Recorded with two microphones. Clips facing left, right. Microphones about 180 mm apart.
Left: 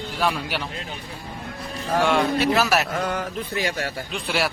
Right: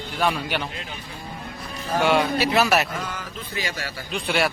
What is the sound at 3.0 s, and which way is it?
Speech, 60° left (ahead or behind).